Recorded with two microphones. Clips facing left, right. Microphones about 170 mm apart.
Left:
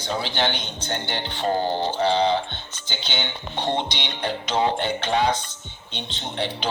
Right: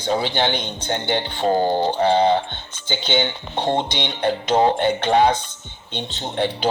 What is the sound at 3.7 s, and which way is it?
Speech, 50° right (ahead or behind).